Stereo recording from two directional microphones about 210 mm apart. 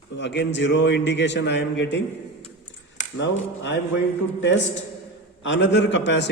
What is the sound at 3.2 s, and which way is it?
Speech, 55° left (ahead or behind).